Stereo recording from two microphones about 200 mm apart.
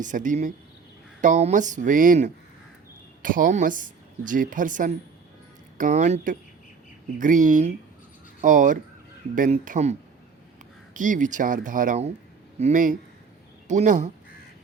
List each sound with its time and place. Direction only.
0.0 s a woman's voice: 40° right (ahead or behind)